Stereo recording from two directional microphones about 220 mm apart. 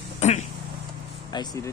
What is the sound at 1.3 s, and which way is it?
Speech, 15° left (ahead or behind).